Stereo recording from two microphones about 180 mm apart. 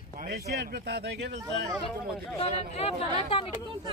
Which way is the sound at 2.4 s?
30° left (ahead or behind).